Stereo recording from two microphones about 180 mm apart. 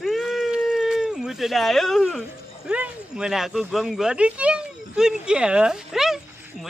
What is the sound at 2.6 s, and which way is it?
Speech, 5° right (ahead or behind).